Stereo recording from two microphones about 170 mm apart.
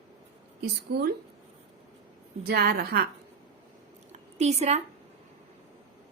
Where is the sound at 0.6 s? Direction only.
75° right (ahead or behind).